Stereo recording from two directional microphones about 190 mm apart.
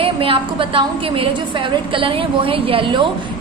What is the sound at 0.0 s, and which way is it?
A woman's voice, 30° right (ahead or behind).